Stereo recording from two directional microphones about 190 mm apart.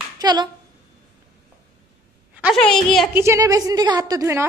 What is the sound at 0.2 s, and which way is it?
Speech, 20° right (ahead or behind).